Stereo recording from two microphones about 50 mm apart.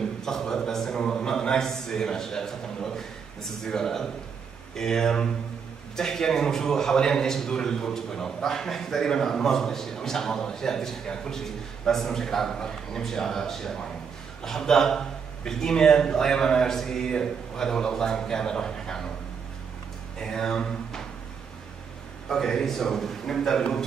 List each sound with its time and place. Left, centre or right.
0.2 s a sound: centre
3.6 s a man's voice: centre
20.2 s a man's voice: centre
22.3 s a man's voice: centre